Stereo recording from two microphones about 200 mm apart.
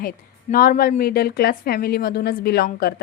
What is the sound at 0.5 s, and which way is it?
A woman's voice, 45° left (ahead or behind).